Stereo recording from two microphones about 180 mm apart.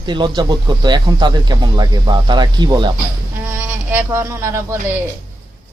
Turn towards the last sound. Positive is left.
turn(degrees=-15)  # may be behind; listen again after turning